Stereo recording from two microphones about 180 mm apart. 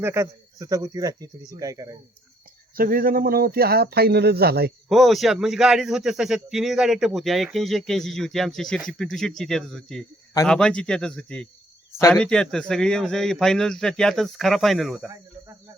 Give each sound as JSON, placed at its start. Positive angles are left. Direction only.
{"t": 0.0, "sound": "speech", "side_deg": -15}
{"t": 2.7, "sound": "speech", "side_deg": -55}
{"t": 4.9, "sound": "a man's voice", "side_deg": 0}